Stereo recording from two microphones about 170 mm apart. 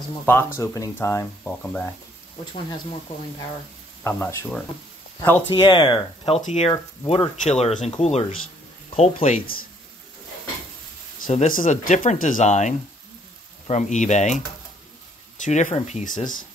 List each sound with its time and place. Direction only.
0.2 s speech: 10° left (ahead or behind)
4.0 s speech: 15° left (ahead or behind)
5.5 s speech: 30° left (ahead or behind)
11.2 s speech: 55° left (ahead or behind)
15.4 s speech: 45° left (ahead or behind)